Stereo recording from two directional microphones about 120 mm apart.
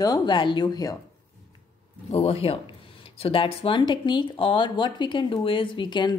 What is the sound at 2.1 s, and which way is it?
Speech, 60° left (ahead or behind).